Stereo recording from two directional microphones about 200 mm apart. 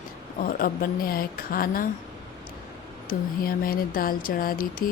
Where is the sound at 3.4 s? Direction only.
45° left (ahead or behind).